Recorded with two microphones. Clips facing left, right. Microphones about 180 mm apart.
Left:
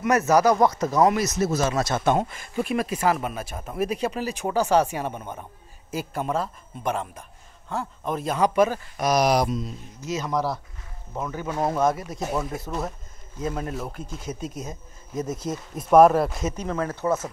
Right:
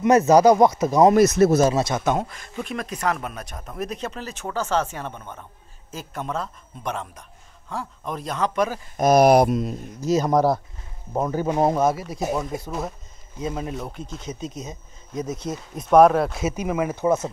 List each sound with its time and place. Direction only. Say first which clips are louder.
0.0 s speech: right 5 dB; 20° right (ahead or behind)
1.1 s speech: right 8 dB; 55° right (ahead or behind)
1.6 s speech: right 5 dB; 30° right (ahead or behind)
2.0 s speech: left 1 dB; 5° right (ahead or behind)
8.9 s speech: right 9 dB; 50° right (ahead or behind)
10.0 s speech: right 7 dB; 40° right (ahead or behind)
11.1 s speech: right 7 dB; 35° right (ahead or behind)
11.5 s speech: right 4 dB; 20° right (ahead or behind)
11.8 s speech: right 2 dB; 5° right (ahead or behind)
12.5 s speech: right 1 dB; centre (ahead or behind); by 17.3 s 15° right (ahead or behind)